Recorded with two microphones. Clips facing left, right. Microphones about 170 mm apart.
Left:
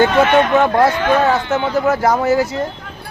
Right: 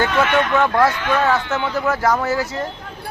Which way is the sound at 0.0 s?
30° left (ahead or behind).